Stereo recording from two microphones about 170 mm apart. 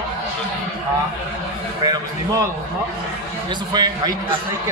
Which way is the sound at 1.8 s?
20° right (ahead or behind).